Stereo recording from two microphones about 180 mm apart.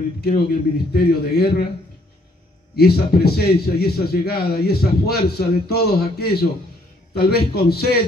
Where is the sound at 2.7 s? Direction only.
60° left (ahead or behind).